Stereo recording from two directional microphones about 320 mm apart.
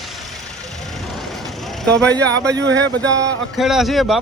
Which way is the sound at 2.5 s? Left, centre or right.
Right.